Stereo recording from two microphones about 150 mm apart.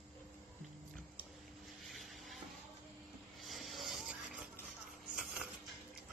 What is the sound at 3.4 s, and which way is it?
Mechanisms, centre (ahead or behind).